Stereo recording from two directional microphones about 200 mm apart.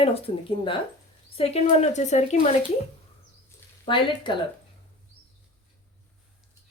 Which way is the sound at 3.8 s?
25° left (ahead or behind).